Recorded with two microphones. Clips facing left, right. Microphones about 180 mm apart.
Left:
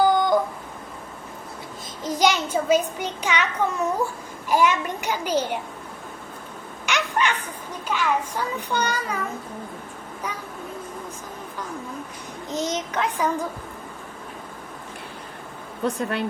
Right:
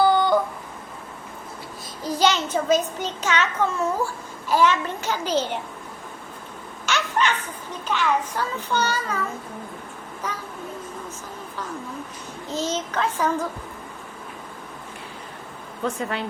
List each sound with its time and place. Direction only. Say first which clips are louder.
0.0 s a sound: even; 10° left (ahead or behind)
2.0 s a child's voice: even; 15° left (ahead or behind)
6.8 s a child's voice: right 1 dB; 15° left (ahead or behind)
10.3 s a child's voice: right 1 dB; 10° left (ahead or behind)
12.5 s a child's voice: even; 15° left (ahead or behind)
16.0 s speech: left 2 dB; 60° left (ahead or behind)